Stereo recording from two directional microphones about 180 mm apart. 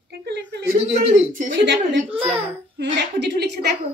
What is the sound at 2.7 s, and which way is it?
Speech, 70° right (ahead or behind).